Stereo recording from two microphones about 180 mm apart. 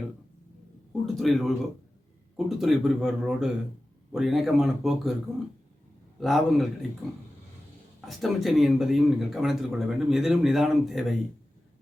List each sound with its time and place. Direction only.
1.0 s speech: centre (ahead or behind)
6.1 s speech: centre (ahead or behind)
8.0 s speech: centre (ahead or behind)